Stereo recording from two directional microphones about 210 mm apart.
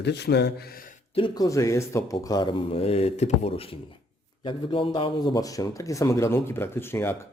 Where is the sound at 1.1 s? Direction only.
20° left (ahead or behind).